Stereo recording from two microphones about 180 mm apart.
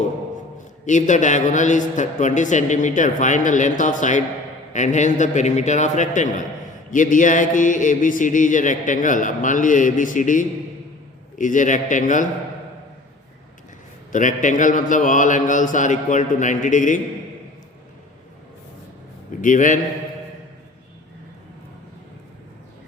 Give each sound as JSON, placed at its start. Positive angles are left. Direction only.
{"t": 0.9, "sound": "speech", "side_deg": 45}
{"t": 14.1, "sound": "speech", "side_deg": 45}
{"t": 19.4, "sound": "speech", "side_deg": 45}